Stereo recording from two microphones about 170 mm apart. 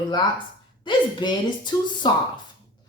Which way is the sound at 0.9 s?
25° left (ahead or behind).